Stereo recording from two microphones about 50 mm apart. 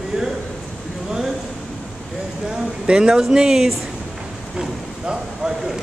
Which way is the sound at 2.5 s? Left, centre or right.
Centre.